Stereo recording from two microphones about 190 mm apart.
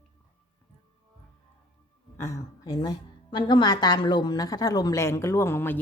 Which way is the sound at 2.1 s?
15° left (ahead or behind).